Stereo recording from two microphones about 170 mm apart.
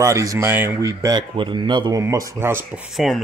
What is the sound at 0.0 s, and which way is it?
Speech, 20° right (ahead or behind).